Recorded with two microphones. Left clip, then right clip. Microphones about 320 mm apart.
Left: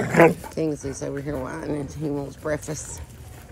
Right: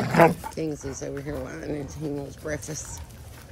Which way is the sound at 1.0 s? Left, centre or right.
Left.